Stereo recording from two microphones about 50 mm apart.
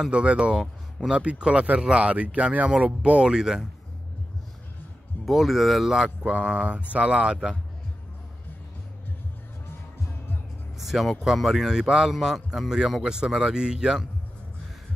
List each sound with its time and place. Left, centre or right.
0.0 s speech: right
5.2 s speech: centre
6.2 s speech: right
10.8 s speech: centre